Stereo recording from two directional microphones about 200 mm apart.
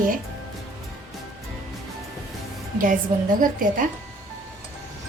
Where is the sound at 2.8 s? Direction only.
40° right (ahead or behind).